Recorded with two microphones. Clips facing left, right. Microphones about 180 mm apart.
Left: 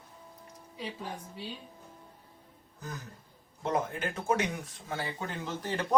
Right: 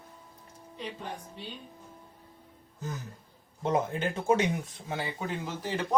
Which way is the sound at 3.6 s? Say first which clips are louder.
Right 3 dB; 20° right (ahead or behind).